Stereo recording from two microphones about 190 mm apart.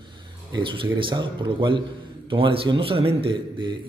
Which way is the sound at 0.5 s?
25° right (ahead or behind).